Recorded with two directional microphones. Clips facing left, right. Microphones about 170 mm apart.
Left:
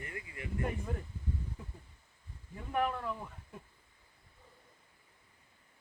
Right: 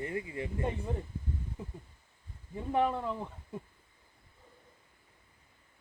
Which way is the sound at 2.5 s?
25° right (ahead or behind).